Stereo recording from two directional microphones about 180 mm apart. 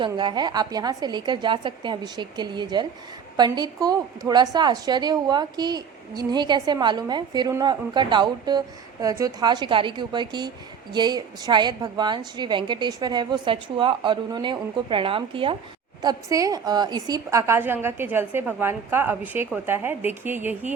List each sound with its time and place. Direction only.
0.0 s a woman's voice: 25° right (ahead or behind); by 20.7 s 10° right (ahead or behind)